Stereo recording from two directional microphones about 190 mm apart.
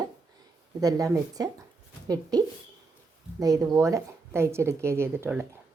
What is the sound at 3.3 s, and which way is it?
A woman's voice, 20° right (ahead or behind).